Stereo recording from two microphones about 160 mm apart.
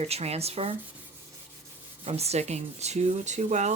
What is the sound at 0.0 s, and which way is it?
Speech, 40° right (ahead or behind).